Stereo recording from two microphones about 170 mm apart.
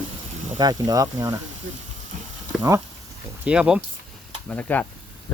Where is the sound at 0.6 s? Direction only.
20° right (ahead or behind).